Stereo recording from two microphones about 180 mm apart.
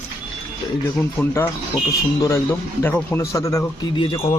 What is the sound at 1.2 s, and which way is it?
Speech, 15° left (ahead or behind).